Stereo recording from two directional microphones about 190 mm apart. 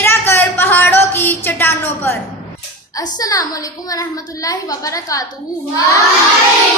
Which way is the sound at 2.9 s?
20° left (ahead or behind).